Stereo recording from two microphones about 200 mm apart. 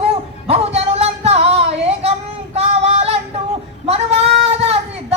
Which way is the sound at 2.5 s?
30° right (ahead or behind).